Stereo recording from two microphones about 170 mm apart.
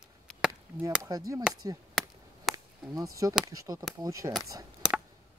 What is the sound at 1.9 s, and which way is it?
Chop, centre (ahead or behind).